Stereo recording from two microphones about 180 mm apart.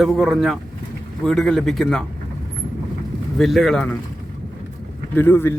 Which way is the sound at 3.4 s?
Centre (ahead or behind).